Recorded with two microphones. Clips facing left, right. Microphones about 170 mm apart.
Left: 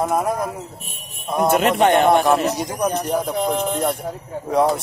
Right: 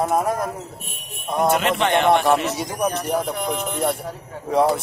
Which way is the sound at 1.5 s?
45° left (ahead or behind).